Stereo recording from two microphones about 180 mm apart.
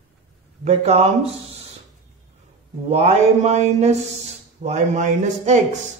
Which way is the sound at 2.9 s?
35° right (ahead or behind).